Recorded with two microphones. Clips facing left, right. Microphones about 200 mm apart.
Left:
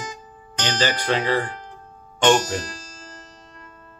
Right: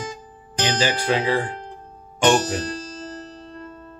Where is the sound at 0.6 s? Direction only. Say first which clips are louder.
Right 2 dB; 10° right (ahead or behind).